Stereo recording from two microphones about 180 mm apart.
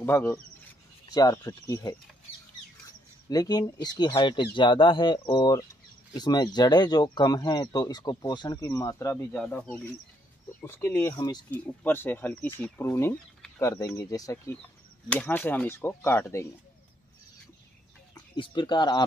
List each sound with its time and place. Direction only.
0.0 s speech: 15° left (ahead or behind)
3.3 s speech: 20° left (ahead or behind)
9.4 s speech: 5° left (ahead or behind)
11.5 s speech: 10° left (ahead or behind)
18.1 s speech: 25° left (ahead or behind)